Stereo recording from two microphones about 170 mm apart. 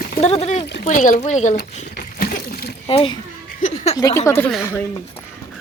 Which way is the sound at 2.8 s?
35° left (ahead or behind).